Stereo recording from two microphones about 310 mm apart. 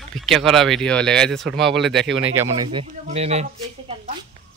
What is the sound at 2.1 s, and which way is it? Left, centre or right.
Speech, right.